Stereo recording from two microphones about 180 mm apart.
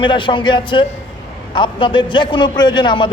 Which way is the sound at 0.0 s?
25° left (ahead or behind).